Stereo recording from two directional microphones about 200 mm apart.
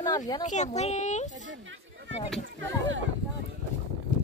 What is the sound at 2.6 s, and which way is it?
Speech, 70° right (ahead or behind).